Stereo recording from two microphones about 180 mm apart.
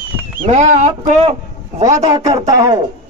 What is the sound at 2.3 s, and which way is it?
Speech, 20° right (ahead or behind).